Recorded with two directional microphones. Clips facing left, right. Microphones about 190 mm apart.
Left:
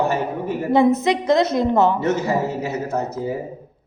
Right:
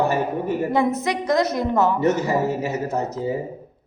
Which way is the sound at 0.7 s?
25° left (ahead or behind).